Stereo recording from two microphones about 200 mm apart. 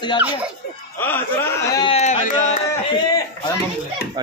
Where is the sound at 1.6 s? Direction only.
20° left (ahead or behind).